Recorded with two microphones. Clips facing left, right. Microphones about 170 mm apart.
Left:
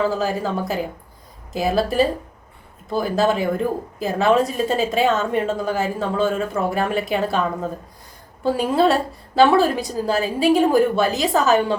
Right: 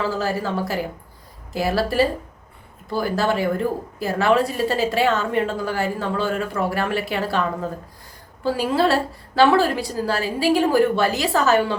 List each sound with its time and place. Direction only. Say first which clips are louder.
0.0 s a woman's voice: left 2 dB; 20° left (ahead or behind)
8.4 s a woman's voice: left 2 dB; 20° left (ahead or behind)